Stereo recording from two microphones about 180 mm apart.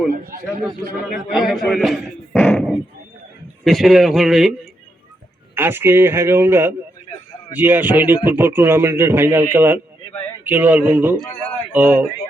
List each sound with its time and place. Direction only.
0.1 s a man's voice: 55° right (ahead or behind)
1.3 s a man's voice: centre (ahead or behind)
2.3 s a sound: 10° left (ahead or behind)
3.6 s a man's voice: centre (ahead or behind)
5.5 s a man's voice: 10° right (ahead or behind)